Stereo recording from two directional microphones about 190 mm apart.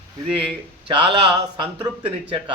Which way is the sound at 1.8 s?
10° right (ahead or behind).